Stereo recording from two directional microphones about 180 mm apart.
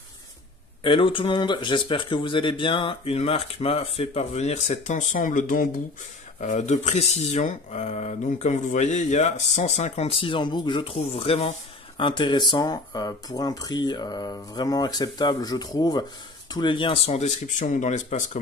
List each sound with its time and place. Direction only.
0.8 s speech: 30° left (ahead or behind)